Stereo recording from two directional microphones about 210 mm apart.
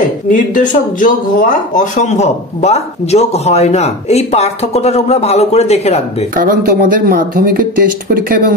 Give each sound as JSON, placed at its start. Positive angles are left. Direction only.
{"t": 0.3, "sound": "speech", "side_deg": 40}
{"t": 6.3, "sound": "speech", "side_deg": -45}